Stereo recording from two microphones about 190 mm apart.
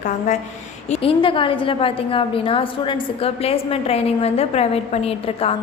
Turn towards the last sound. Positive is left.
turn(degrees=30)  # may be behind; listen again after turning